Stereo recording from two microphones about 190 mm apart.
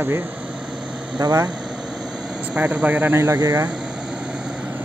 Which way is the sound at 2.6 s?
5° right (ahead or behind).